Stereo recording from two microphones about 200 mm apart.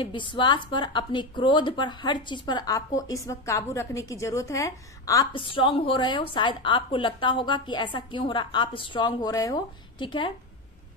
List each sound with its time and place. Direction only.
0.0 s a woman's voice: 25° left (ahead or behind)